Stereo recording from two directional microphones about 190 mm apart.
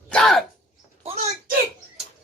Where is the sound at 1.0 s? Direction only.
35° right (ahead or behind).